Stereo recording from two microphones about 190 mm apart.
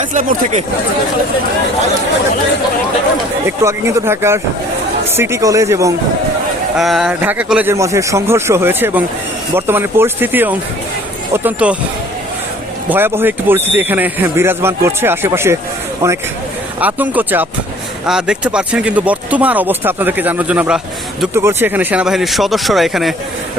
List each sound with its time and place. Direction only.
0.1 s speech: 40° right (ahead or behind)
3.4 s speech: 15° right (ahead or behind)
6.7 s speech: centre (ahead or behind)
12.9 s speech: 10° right (ahead or behind)
16.8 s speech: 10° right (ahead or behind)